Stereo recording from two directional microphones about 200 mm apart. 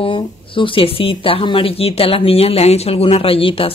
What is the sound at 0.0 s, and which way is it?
Speech, 25° left (ahead or behind).